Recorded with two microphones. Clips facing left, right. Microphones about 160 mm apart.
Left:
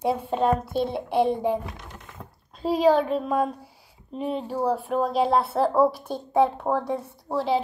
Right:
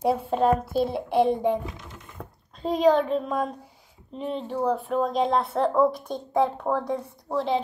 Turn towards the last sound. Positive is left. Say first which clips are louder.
# left 1 dB
turn(degrees=5)  # may be behind; listen again after turning